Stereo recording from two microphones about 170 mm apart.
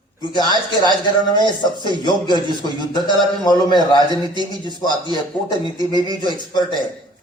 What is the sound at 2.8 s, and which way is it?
A man's voice, 25° left (ahead or behind).